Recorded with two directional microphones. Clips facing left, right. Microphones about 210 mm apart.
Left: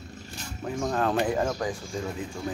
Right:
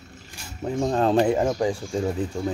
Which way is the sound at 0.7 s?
30° right (ahead or behind).